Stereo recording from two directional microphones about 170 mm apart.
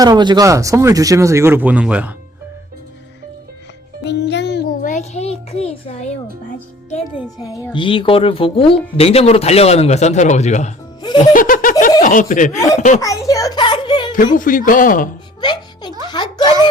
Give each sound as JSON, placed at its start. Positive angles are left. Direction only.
{"t": 0.0, "sound": "speech", "side_deg": -25}
{"t": 4.0, "sound": "music", "side_deg": 90}
{"t": 7.7, "sound": "speech", "side_deg": 30}
{"t": 11.0, "sound": "speech", "side_deg": 25}
{"t": 11.3, "sound": "speech", "side_deg": 55}
{"t": 13.0, "sound": "a sound", "side_deg": 20}
{"t": 14.3, "sound": "speech", "side_deg": 50}
{"t": 15.4, "sound": "music", "side_deg": 25}
{"t": 16.0, "sound": "a sound", "side_deg": 25}